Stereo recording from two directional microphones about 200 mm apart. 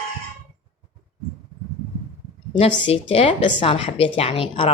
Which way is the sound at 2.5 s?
30° left (ahead or behind).